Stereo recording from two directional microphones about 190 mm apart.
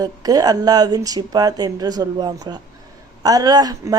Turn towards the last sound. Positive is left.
turn(degrees=-20)  # may be behind; listen again after turning